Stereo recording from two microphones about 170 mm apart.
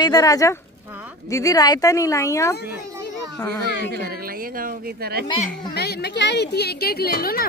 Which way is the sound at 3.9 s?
65° right (ahead or behind).